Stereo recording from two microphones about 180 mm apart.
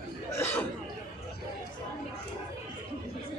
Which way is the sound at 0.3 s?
10° left (ahead or behind).